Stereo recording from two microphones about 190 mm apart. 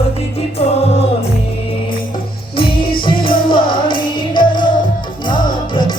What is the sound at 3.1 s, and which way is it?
Music, 25° left (ahead or behind).